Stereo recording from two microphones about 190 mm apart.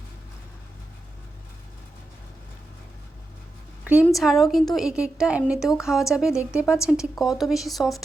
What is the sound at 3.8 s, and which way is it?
A woman's voice, 5° right (ahead or behind).